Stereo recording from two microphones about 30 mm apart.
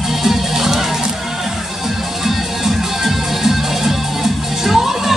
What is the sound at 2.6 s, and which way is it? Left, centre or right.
Music, centre.